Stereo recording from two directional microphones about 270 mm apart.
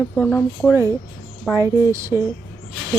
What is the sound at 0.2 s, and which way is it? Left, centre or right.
Speech, centre.